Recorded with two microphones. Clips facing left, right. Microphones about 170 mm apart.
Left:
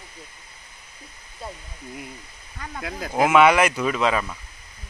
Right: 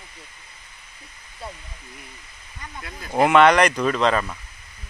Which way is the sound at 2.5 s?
80° left.